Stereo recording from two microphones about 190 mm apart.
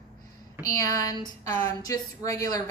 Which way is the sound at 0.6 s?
20° left (ahead or behind).